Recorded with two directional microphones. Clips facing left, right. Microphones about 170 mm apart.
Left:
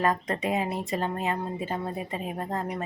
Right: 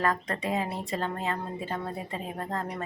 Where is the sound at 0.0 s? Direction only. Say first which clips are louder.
Left 2 dB; 20° left (ahead or behind).